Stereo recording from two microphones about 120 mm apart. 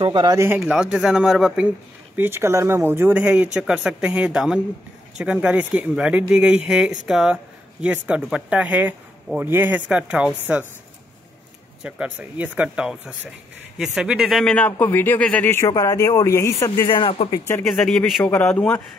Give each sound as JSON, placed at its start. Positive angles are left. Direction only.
{"t": 0.0, "sound": "a man's voice", "side_deg": -40}
{"t": 0.6, "sound": "speech", "side_deg": -5}
{"t": 2.1, "sound": "speech", "side_deg": -20}
{"t": 11.8, "sound": "a man's voice", "side_deg": -10}
{"t": 15.7, "sound": "a man's voice", "side_deg": 30}
{"t": 17.0, "sound": "speech", "side_deg": 50}
{"t": 17.6, "sound": "a man's voice", "side_deg": 5}